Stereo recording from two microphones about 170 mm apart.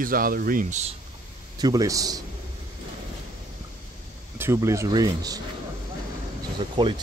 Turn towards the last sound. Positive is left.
turn(degrees=-30)  # may be behind; listen again after turning